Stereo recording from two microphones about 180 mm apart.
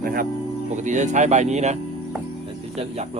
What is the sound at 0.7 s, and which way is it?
Speech, 40° right (ahead or behind).